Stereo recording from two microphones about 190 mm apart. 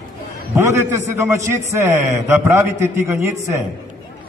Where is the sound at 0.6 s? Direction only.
15° right (ahead or behind).